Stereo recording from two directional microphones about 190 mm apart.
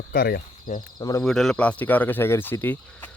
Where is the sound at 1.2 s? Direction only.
Centre (ahead or behind).